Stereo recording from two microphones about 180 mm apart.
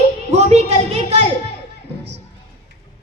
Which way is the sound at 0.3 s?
35° right (ahead or behind).